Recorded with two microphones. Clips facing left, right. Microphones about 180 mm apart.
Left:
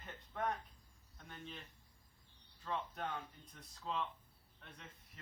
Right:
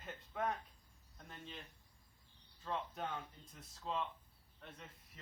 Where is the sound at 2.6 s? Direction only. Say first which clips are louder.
Even; 5° right (ahead or behind).